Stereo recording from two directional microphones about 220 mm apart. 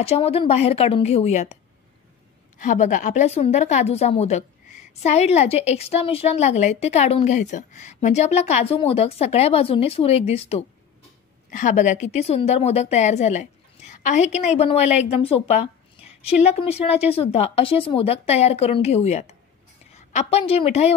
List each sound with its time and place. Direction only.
0.0 s a woman's voice: 25° left (ahead or behind)
2.6 s a woman's voice: 35° left (ahead or behind)